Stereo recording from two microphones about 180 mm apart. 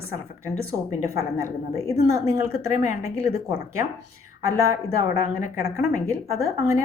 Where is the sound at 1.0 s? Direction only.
15° right (ahead or behind).